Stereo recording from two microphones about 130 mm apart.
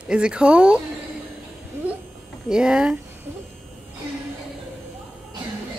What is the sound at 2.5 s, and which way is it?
Speech, 5° right (ahead or behind).